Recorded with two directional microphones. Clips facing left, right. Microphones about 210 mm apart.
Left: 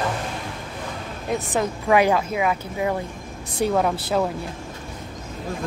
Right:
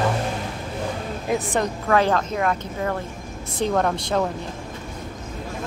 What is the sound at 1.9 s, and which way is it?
Speech, 10° left (ahead or behind).